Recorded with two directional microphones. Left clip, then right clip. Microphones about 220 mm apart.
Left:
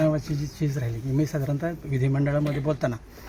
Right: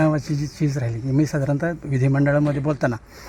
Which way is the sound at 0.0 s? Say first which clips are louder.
Right 3 dB; 45° right (ahead or behind).